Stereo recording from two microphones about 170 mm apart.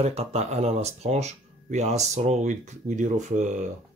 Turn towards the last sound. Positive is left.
turn(degrees=-45)  # may be behind; listen again after turning